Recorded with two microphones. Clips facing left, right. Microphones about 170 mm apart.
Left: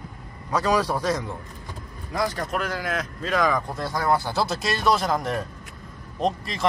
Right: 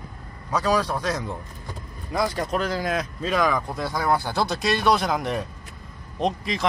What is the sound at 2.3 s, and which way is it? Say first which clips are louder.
Speech: right 3 dB; 20° right (ahead or behind).